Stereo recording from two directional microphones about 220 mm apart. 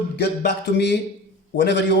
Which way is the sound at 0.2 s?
50° left (ahead or behind).